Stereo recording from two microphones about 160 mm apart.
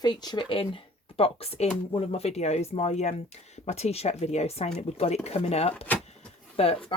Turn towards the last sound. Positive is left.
turn(degrees=40)  # may be behind; listen again after turning